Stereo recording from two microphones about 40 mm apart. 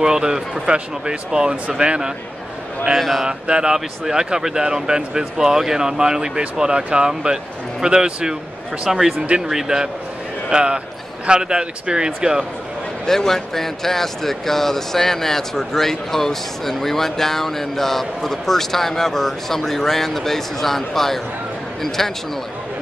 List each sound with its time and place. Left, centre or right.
0.0 s speech: centre
3.0 s speech: centre
3.3 s speech: right
8.9 s speech: centre
13.0 s speech: centre